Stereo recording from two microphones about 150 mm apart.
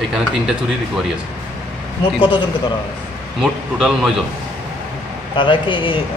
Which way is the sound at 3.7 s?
5° right (ahead or behind).